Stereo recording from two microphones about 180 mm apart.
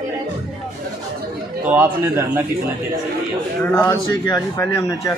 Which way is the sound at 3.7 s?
20° left (ahead or behind).